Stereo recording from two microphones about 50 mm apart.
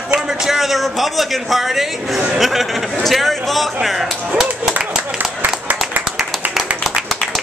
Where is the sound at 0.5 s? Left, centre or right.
Centre.